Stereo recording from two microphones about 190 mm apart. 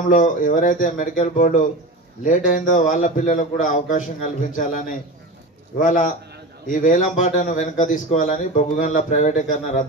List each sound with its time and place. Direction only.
0.1 s a man's voice: 45° left (ahead or behind)